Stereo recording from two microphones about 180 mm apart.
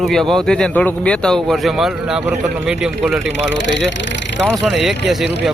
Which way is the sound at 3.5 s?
80° left.